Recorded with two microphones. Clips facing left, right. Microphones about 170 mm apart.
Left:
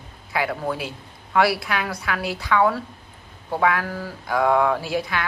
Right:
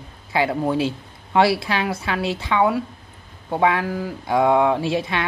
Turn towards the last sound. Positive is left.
turn(degrees=-25)  # may be behind; listen again after turning